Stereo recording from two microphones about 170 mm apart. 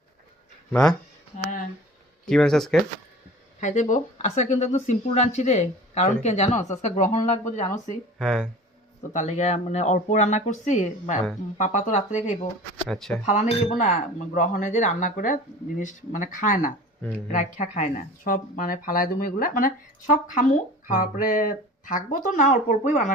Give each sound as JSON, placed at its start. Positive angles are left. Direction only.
{"t": 0.7, "sound": "speech", "side_deg": 5}
{"t": 2.2, "sound": "speech", "side_deg": 5}
{"t": 3.6, "sound": "speech", "side_deg": 45}
{"t": 8.2, "sound": "speech", "side_deg": 0}
{"t": 9.1, "sound": "speech", "side_deg": 45}